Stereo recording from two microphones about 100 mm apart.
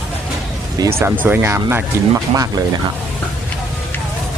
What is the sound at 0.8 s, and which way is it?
Speech, 40° right (ahead or behind).